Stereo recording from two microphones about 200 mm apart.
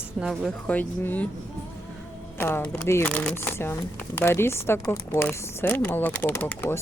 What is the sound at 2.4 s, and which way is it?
Speech, 10° left (ahead or behind).